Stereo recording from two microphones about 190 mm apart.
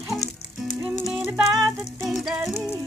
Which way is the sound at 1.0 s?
5° right (ahead or behind).